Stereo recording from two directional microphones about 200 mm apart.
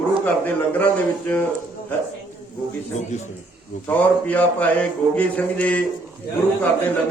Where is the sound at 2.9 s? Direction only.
35° left (ahead or behind).